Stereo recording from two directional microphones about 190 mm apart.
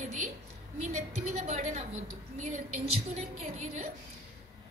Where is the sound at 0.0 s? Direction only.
40° right (ahead or behind).